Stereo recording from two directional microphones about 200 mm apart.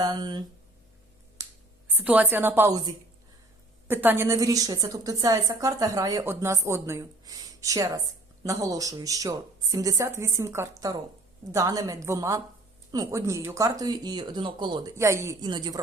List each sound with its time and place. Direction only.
0.0 s speech: 20° right (ahead or behind)
1.4 s finger snapping: 15° right (ahead or behind)
1.9 s a woman's voice: 10° right (ahead or behind)